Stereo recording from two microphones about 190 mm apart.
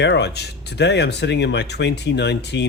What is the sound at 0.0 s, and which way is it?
Speech, 65° left (ahead or behind).